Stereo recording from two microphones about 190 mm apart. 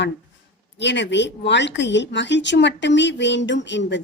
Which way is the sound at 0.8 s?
70° left (ahead or behind).